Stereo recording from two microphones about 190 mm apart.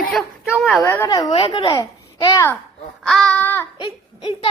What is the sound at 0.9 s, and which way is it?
Babbling, 15° left (ahead or behind).